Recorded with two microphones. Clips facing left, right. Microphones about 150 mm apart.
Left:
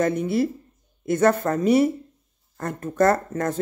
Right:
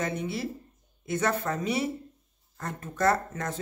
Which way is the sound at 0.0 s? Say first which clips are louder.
Left 10 dB; 50° left (ahead or behind).